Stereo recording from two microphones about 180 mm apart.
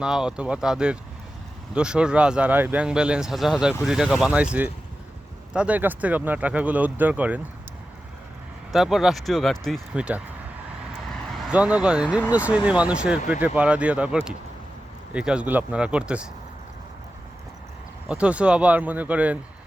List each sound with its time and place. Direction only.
0.0 s speech: 5° right (ahead or behind)
5.5 s speech: 10° right (ahead or behind)
8.7 s speech: centre (ahead or behind)
11.1 s vehicle: 5° left (ahead or behind)
12.3 s speech: 5° right (ahead or behind)
18.1 s speech: 5° right (ahead or behind)